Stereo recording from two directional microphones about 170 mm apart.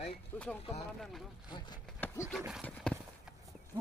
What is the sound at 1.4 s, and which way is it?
Speech, 25° left (ahead or behind).